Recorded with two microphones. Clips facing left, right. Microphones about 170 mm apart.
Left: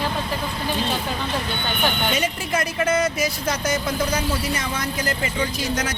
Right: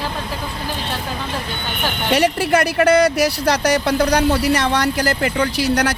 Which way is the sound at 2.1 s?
70° right (ahead or behind).